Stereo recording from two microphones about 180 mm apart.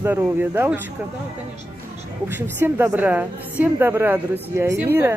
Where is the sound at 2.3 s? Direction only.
10° right (ahead or behind).